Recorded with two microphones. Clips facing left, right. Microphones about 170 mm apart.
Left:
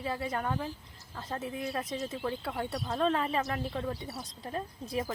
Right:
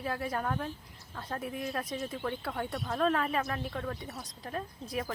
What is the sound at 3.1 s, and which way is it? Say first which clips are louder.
Speech: even; 25° left (ahead or behind).